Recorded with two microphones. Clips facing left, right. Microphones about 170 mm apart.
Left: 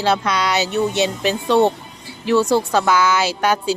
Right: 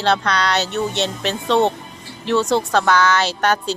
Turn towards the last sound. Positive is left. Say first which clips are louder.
# left 1 dB
turn(degrees=5)  # may be behind; listen again after turning